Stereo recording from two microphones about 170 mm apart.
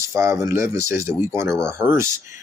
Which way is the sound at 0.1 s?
15° right (ahead or behind).